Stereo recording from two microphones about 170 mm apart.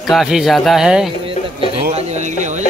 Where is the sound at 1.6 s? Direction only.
40° right (ahead or behind).